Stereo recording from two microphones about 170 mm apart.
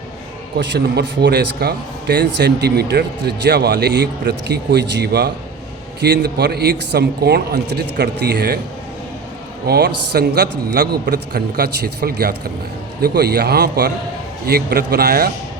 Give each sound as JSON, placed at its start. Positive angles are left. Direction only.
{"t": 0.5, "sound": "a man's voice", "side_deg": -80}
{"t": 9.6, "sound": "a man's voice", "side_deg": -75}